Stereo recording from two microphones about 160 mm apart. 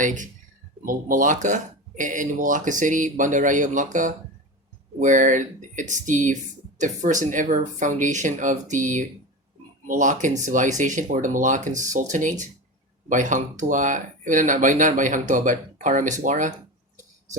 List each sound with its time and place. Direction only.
0.0 s speech: 55° right (ahead or behind)
4.9 s speech: 50° right (ahead or behind)